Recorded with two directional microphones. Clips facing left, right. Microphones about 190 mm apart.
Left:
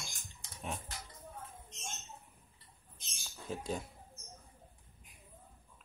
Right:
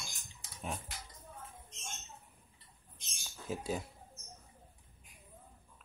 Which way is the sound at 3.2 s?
5° right (ahead or behind).